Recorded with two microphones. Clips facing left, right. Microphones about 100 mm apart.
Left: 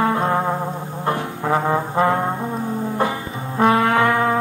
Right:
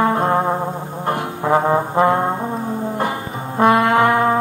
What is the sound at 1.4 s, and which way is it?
Brass instrument, 25° right (ahead or behind).